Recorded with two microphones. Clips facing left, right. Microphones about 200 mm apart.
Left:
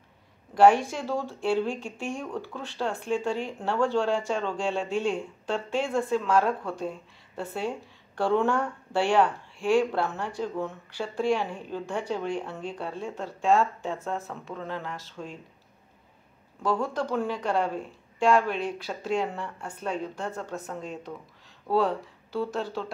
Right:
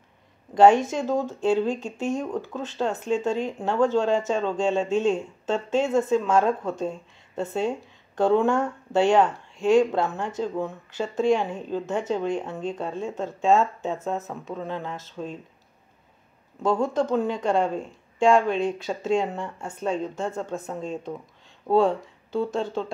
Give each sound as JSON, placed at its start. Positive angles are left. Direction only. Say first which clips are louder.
{"t": 0.8, "sound": "speech", "louder": "right 5 dB", "side_deg": -20}
{"t": 16.6, "sound": "speech", "louder": "right 5 dB", "side_deg": -25}